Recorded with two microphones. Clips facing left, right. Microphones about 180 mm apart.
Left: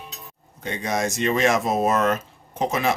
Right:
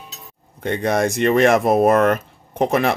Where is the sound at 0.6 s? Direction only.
60° right (ahead or behind).